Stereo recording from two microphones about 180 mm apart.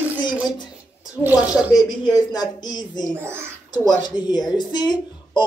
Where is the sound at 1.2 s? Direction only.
5° right (ahead or behind).